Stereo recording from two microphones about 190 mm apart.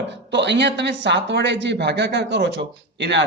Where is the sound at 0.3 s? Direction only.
65° right (ahead or behind).